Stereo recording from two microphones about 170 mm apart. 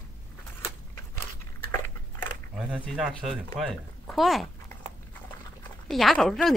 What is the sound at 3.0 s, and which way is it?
Speech, 5° right (ahead or behind).